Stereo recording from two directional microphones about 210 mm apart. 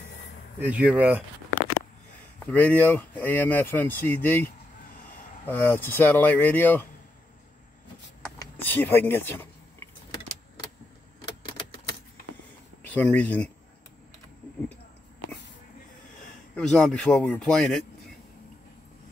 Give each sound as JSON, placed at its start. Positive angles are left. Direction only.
{"t": 0.6, "sound": "speech", "side_deg": -5}
{"t": 2.4, "sound": "speech", "side_deg": 10}
{"t": 5.5, "sound": "speech", "side_deg": 10}
{"t": 8.4, "sound": "a sound", "side_deg": 10}
{"t": 11.2, "sound": "a sound", "side_deg": 20}
{"t": 12.8, "sound": "speech", "side_deg": 5}
{"t": 16.5, "sound": "speech", "side_deg": 5}